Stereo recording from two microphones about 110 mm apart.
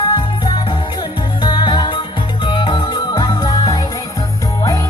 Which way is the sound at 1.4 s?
45° left (ahead or behind).